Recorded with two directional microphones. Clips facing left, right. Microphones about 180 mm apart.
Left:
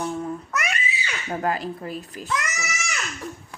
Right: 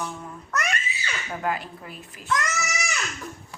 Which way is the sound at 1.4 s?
35° left (ahead or behind).